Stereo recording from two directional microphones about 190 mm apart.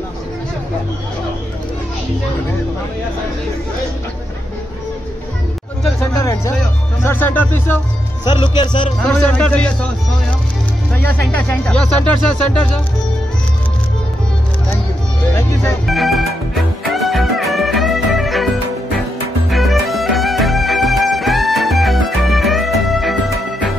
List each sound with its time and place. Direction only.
6.1 s speech: 15° left (ahead or behind)
8.3 s speech: 25° left (ahead or behind)
9.0 s speech: 5° left (ahead or behind)
10.9 s speech: 10° left (ahead or behind)
15.9 s music: centre (ahead or behind)
19.5 s music: centre (ahead or behind)